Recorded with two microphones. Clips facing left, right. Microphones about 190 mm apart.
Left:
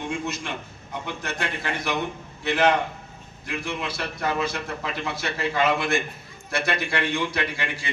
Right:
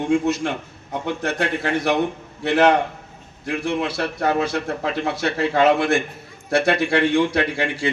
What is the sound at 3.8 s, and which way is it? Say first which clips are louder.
A man's voice: right 6 dB; 75° right (ahead or behind).